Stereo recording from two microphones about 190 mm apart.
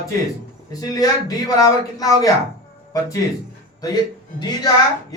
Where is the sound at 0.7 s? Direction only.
20° left (ahead or behind).